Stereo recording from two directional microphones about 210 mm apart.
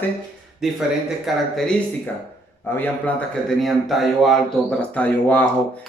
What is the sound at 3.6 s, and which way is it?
Speech, centre (ahead or behind).